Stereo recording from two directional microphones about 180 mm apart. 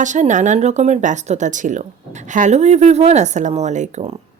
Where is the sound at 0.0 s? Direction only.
45° right (ahead or behind).